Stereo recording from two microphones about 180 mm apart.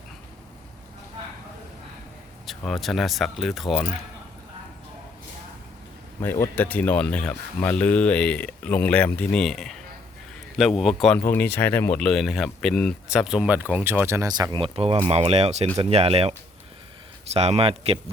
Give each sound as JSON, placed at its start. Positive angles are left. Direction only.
{"t": 2.5, "sound": "speech", "side_deg": 0}
{"t": 6.2, "sound": "speech", "side_deg": 10}
{"t": 11.3, "sound": "speech", "side_deg": 10}
{"t": 17.3, "sound": "speech", "side_deg": -35}